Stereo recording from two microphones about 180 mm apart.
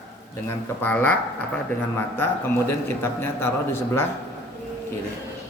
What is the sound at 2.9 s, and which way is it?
Speech, 15° left (ahead or behind).